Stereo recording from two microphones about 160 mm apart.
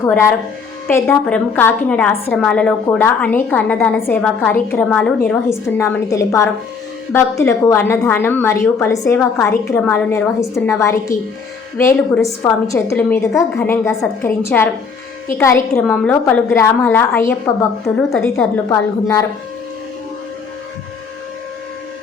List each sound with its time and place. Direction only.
0.0 s a woman's voice: 15° left (ahead or behind)
5.5 s a woman's voice: 15° left (ahead or behind)
17.8 s a woman's voice: 5° left (ahead or behind)
18.7 s a woman's voice: 20° left (ahead or behind)